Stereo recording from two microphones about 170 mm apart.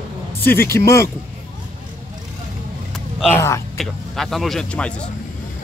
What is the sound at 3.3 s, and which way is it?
Speech, 15° left (ahead or behind).